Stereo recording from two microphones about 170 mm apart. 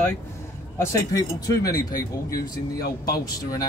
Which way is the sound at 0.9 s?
20° left (ahead or behind).